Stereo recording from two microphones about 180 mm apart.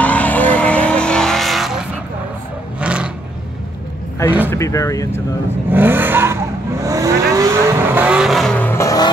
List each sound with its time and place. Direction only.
0.0 s vehicle: 10° left (ahead or behind)
2.8 s a sound: 5° right (ahead or behind)
4.5 s speech: 15° left (ahead or behind)
5.7 s vehicle: 10° right (ahead or behind); by 9.1 s 20° left (ahead or behind)